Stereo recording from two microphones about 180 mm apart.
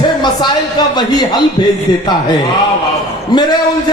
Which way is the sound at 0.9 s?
25° left (ahead or behind).